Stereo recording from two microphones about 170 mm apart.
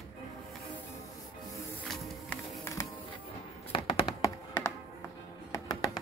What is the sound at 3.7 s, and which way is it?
Tap, 30° left (ahead or behind).